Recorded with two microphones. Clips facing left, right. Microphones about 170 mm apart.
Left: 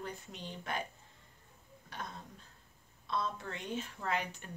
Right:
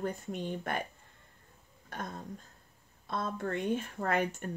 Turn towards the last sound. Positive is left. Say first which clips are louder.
# right 6 dB
turn(degrees=-50)  # may be behind; listen again after turning